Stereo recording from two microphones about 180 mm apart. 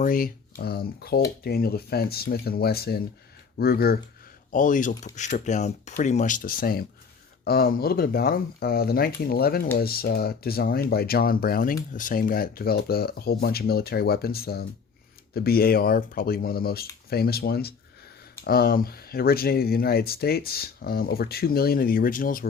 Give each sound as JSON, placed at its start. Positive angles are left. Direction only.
{"t": 0.0, "sound": "speech", "side_deg": 50}
{"t": 4.5, "sound": "speech", "side_deg": 45}